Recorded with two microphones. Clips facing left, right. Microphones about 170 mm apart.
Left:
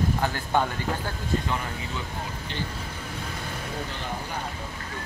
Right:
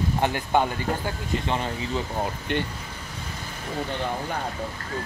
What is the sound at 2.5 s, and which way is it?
Speech, 60° right (ahead or behind).